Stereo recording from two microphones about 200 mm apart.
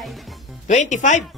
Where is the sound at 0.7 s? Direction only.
35° left (ahead or behind).